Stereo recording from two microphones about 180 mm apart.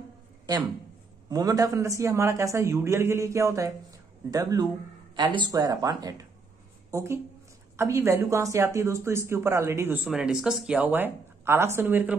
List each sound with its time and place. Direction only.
1.3 s a man's voice: 20° right (ahead or behind)
10.0 s a man's voice: 5° right (ahead or behind)